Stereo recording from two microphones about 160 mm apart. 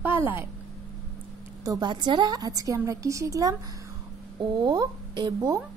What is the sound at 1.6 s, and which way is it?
A woman's voice, 25° right (ahead or behind).